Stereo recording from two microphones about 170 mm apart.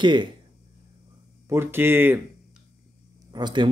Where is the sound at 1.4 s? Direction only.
15° right (ahead or behind).